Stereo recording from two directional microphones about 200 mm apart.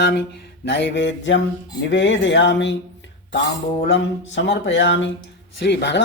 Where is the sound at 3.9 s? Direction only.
60° left (ahead or behind).